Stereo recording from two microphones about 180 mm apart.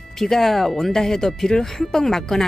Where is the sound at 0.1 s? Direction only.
Centre (ahead or behind).